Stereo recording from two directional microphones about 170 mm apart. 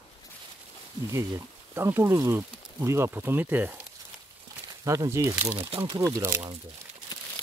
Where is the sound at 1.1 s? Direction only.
15° right (ahead or behind).